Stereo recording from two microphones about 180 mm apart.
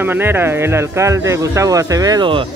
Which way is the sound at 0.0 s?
10° right (ahead or behind).